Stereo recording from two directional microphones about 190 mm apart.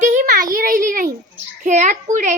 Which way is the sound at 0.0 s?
40° right (ahead or behind).